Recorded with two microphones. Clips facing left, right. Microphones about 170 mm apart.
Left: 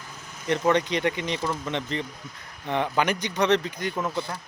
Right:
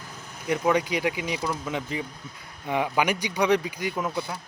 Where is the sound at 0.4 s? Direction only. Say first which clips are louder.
Left 1 dB; 10° right (ahead or behind).